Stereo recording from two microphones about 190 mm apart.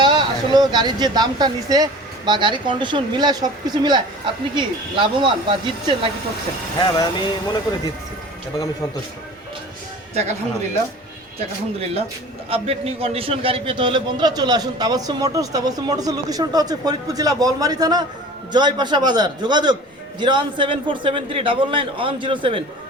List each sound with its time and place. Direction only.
0.0 s a man's voice: 25° right (ahead or behind)
6.7 s speech: 20° left (ahead or behind)
11.3 s a man's voice: 30° right (ahead or behind)